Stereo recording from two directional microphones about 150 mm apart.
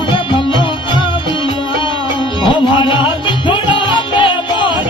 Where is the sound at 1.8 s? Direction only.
30° left (ahead or behind).